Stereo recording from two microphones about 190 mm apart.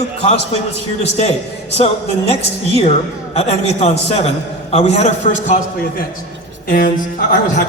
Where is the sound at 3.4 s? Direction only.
30° left (ahead or behind).